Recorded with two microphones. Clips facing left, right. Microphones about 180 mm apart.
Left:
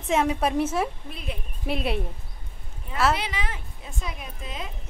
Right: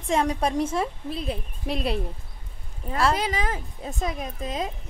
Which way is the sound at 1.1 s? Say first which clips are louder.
Right 6 dB; 35° right (ahead or behind).